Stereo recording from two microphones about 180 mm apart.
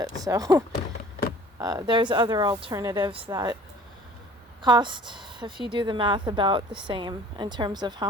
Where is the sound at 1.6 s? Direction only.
20° right (ahead or behind).